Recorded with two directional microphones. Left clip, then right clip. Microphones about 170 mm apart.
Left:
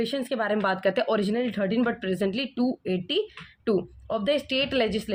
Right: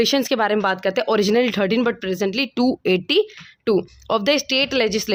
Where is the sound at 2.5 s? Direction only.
70° right (ahead or behind).